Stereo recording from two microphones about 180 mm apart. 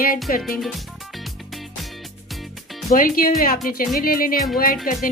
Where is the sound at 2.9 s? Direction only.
50° left (ahead or behind).